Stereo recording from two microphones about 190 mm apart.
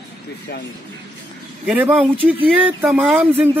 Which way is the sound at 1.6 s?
10° right (ahead or behind).